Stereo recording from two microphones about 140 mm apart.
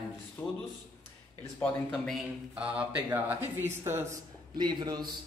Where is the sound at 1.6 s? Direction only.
15° left (ahead or behind).